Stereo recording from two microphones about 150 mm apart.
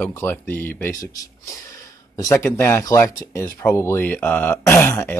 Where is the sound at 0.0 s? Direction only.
15° left (ahead or behind).